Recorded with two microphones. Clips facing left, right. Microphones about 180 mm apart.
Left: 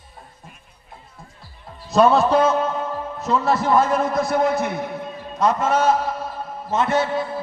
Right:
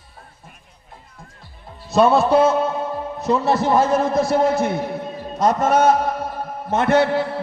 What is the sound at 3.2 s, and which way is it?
A man's voice, 20° right (ahead or behind).